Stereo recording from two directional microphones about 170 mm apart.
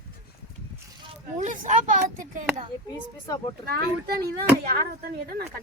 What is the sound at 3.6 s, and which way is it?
Speech, 65° right (ahead or behind).